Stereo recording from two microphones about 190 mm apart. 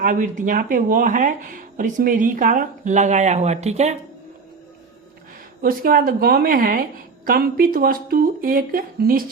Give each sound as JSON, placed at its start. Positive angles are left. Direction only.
{"t": 0.0, "sound": "speech", "side_deg": -45}
{"t": 5.6, "sound": "speech", "side_deg": -50}